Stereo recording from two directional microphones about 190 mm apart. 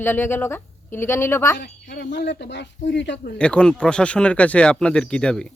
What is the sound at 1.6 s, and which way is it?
Speech, 60° left (ahead or behind).